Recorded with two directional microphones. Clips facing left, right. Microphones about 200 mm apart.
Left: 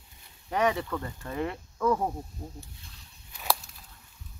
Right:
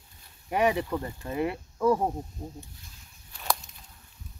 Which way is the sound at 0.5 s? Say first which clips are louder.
Right 2 dB; 15° right (ahead or behind).